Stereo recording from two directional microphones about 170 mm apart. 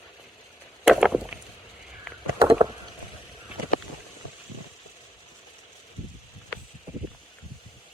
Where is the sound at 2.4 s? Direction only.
15° right (ahead or behind).